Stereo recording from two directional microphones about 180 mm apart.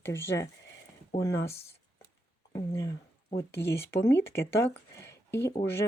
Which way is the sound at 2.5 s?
20° left (ahead or behind).